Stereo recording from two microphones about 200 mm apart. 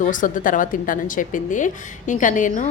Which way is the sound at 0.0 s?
40° left (ahead or behind).